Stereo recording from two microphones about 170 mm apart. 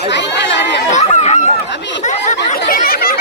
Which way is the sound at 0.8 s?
40° left (ahead or behind).